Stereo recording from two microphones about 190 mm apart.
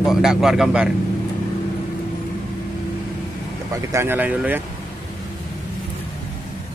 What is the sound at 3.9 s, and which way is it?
Speech, 10° right (ahead or behind).